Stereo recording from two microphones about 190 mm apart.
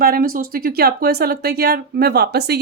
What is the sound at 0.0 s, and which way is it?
Speech, 50° right (ahead or behind).